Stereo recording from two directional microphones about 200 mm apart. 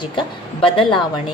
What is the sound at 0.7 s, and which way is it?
Speech, 25° left (ahead or behind).